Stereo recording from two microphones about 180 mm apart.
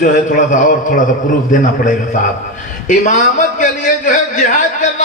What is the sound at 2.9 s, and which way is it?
A man's voice, 45° left (ahead or behind).